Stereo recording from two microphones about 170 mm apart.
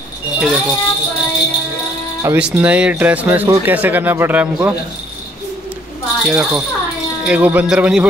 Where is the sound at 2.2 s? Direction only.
15° right (ahead or behind).